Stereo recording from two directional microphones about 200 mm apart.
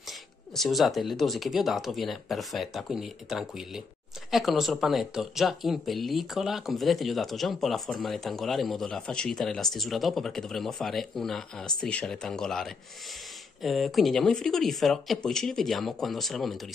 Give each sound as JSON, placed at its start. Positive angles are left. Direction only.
{"t": 0.6, "sound": "speech", "side_deg": 0}